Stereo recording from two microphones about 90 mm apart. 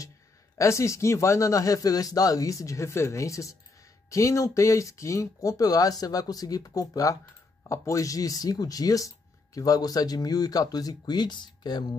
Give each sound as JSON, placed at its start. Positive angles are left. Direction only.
{"t": 0.6, "sound": "speech", "side_deg": 35}